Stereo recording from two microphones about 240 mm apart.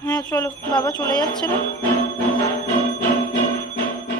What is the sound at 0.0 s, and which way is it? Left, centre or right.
Speech, centre.